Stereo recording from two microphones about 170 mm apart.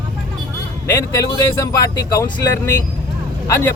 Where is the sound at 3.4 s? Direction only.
15° left (ahead or behind).